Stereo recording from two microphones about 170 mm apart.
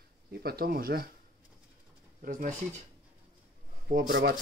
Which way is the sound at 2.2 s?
50° right (ahead or behind).